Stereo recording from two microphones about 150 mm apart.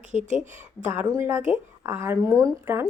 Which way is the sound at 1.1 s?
20° right (ahead or behind).